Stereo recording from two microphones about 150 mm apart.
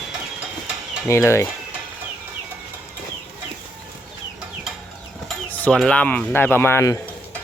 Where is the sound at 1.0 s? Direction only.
15° left (ahead or behind).